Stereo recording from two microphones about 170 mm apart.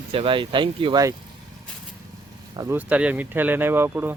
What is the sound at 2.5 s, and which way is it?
Speech, 10° right (ahead or behind).